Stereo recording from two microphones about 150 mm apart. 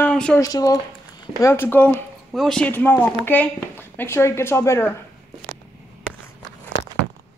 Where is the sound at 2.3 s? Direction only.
Centre (ahead or behind); by 5.0 s 15° left (ahead or behind).